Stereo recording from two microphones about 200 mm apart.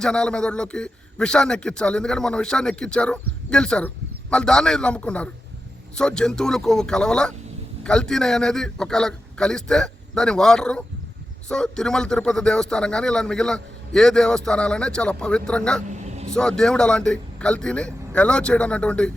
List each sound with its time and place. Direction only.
0.0 s a man's voice: 5° left (ahead or behind)
15.9 s vehicle: 35° right (ahead or behind)
16.3 s a man's voice: 5° left (ahead or behind)